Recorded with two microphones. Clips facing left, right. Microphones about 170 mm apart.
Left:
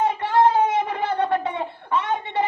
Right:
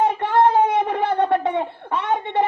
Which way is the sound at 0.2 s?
55° right (ahead or behind).